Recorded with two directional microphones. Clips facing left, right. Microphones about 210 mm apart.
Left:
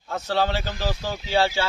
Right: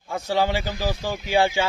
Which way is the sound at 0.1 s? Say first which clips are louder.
Right 1 dB; 10° right (ahead or behind).